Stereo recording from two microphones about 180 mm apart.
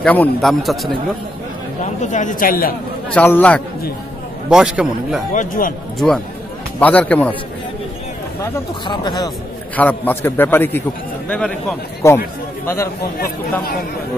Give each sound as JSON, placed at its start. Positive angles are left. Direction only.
{"t": 0.0, "sound": "a man's voice", "side_deg": 10}
{"t": 2.0, "sound": "a man's voice", "side_deg": 45}
{"t": 3.2, "sound": "a man's voice", "side_deg": 10}
{"t": 4.5, "sound": "a man's voice", "side_deg": -5}
{"t": 5.3, "sound": "a man's voice", "side_deg": 45}
{"t": 5.9, "sound": "a man's voice", "side_deg": 0}
{"t": 8.8, "sound": "speech", "side_deg": 25}
{"t": 9.8, "sound": "a man's voice", "side_deg": 10}
{"t": 12.6, "sound": "a man's voice", "side_deg": 15}